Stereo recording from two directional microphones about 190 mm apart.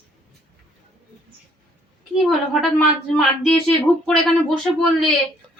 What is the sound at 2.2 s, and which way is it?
A woman's voice, centre (ahead or behind).